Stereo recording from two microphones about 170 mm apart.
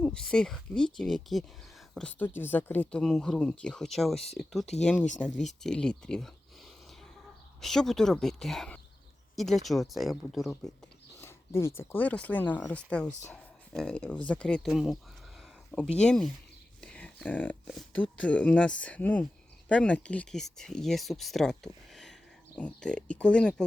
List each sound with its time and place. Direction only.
0.0 s speech: 5° left (ahead or behind)
7.6 s speech: centre (ahead or behind)
11.2 s speech: 15° left (ahead or behind)